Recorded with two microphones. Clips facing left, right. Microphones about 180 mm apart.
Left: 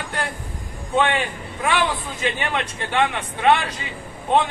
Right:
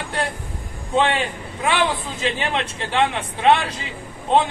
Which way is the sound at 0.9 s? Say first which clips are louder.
Right 1 dB; 25° right (ahead or behind).